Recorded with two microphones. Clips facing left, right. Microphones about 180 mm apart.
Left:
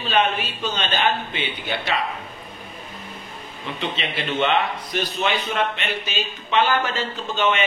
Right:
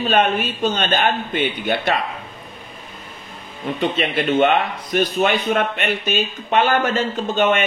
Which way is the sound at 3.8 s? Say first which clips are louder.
Right 8 dB; 50° right (ahead or behind).